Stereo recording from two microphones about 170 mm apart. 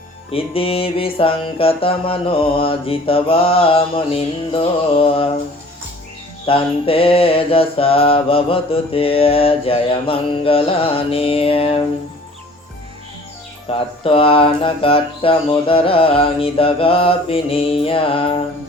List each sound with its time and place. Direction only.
0.3 s mantra: 35° left (ahead or behind)
6.4 s mantra: 30° left (ahead or behind)
13.7 s mantra: 35° left (ahead or behind)